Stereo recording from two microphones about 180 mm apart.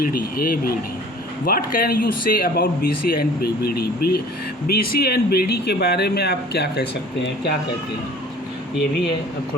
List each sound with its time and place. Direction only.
0.0 s speech: 55° left (ahead or behind)